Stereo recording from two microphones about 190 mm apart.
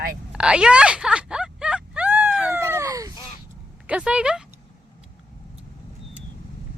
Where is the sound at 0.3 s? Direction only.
5° right (ahead or behind).